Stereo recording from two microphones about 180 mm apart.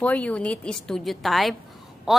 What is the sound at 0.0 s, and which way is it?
A woman's voice, 5° left (ahead or behind).